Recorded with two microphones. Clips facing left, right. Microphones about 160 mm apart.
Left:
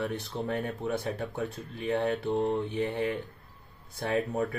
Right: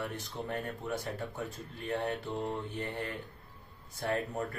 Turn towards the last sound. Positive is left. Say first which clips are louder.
# left 5 dB
turn(degrees=65)  # may be behind; listen again after turning